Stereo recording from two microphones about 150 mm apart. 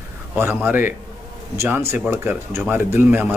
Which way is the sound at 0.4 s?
15° right (ahead or behind).